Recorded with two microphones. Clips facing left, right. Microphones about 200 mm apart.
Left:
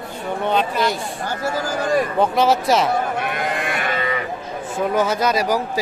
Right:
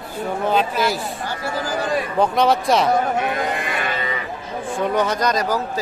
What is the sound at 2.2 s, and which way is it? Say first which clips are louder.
Speech: right 3 dB; centre (ahead or behind).